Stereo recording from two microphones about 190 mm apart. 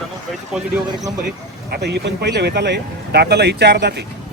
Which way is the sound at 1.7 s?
60° right (ahead or behind).